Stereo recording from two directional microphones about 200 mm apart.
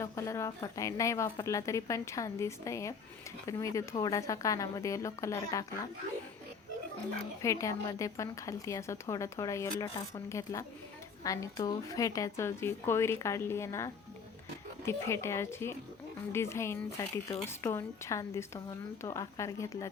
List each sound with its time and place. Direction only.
0.0 s a woman's voice: 15° left (ahead or behind)
7.4 s a woman's voice: 15° left (ahead or behind)